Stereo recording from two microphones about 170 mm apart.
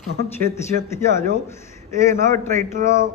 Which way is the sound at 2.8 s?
50° right (ahead or behind).